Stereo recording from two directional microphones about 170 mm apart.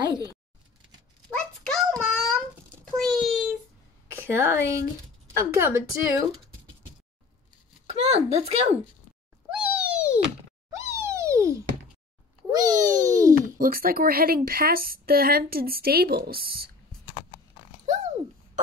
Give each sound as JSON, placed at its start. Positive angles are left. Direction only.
{"t": 0.0, "sound": "speech", "side_deg": -25}
{"t": 1.3, "sound": "a sound", "side_deg": 5}
{"t": 4.2, "sound": "a woman's voice", "side_deg": -15}
{"t": 7.8, "sound": "speech", "side_deg": -40}
{"t": 9.5, "sound": "cat", "side_deg": -10}
{"t": 11.0, "sound": "a sound", "side_deg": -15}
{"t": 12.4, "sound": "babbling", "side_deg": -20}
{"t": 13.6, "sound": "a woman's voice", "side_deg": -60}